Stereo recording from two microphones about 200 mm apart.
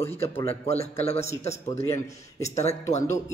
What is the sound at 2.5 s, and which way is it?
Speech, 35° left (ahead or behind).